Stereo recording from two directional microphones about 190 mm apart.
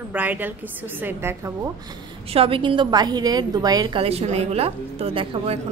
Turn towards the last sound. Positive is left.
turn(degrees=-30)  # may be behind; listen again after turning